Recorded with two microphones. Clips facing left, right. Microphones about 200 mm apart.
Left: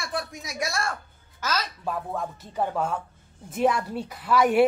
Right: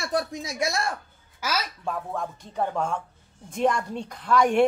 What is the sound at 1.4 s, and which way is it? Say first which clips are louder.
Speech: even; 10° right (ahead or behind).